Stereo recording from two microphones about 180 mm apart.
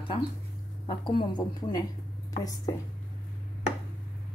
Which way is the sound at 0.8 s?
30° left (ahead or behind).